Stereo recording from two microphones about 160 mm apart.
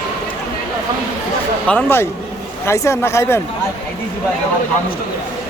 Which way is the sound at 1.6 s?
10° left (ahead or behind).